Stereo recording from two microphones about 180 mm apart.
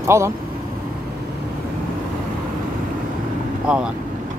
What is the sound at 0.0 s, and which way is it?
Speech, 15° right (ahead or behind).